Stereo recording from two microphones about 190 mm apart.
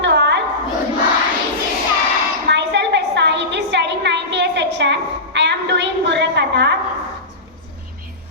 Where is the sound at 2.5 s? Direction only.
65° right (ahead or behind).